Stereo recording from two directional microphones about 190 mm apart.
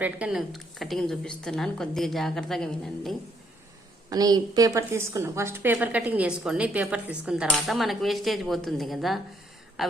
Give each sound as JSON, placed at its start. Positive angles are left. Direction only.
{"t": 0.0, "sound": "a woman's voice", "side_deg": -5}
{"t": 4.1, "sound": "a woman's voice", "side_deg": -20}